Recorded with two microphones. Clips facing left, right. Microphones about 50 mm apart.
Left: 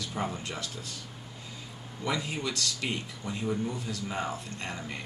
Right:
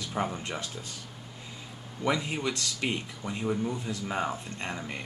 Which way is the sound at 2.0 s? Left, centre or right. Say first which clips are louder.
Right 3 dB; right.